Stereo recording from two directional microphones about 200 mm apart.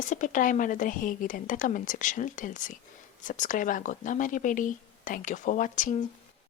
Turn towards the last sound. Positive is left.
turn(degrees=40)  # may be behind; listen again after turning